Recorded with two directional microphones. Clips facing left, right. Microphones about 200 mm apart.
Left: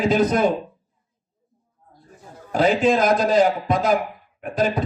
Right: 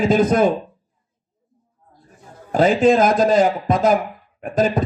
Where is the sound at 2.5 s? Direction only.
45° right (ahead or behind).